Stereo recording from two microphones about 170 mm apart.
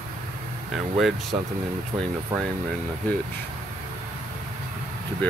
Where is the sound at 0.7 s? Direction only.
Centre (ahead or behind).